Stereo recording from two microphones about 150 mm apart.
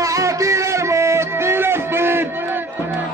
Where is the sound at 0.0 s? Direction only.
20° right (ahead or behind).